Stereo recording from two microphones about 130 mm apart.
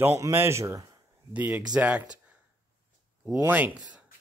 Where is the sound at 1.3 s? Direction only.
10° right (ahead or behind).